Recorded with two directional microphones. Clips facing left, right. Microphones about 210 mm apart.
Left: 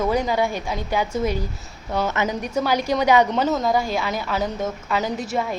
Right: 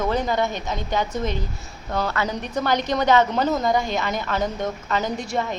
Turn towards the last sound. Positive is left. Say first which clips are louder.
# left 1 dB
turn(degrees=5)  # may be behind; listen again after turning